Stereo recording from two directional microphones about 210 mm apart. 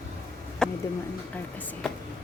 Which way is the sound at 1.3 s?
5° left (ahead or behind).